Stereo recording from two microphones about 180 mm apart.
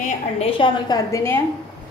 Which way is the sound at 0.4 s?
30° left (ahead or behind).